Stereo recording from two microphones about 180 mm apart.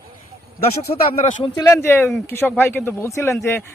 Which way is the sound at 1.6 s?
15° left (ahead or behind).